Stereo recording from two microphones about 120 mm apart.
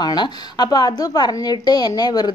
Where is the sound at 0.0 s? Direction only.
35° left (ahead or behind).